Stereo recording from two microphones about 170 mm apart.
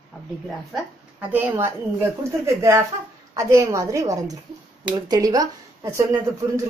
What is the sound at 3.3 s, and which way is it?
Speech, 20° right (ahead or behind).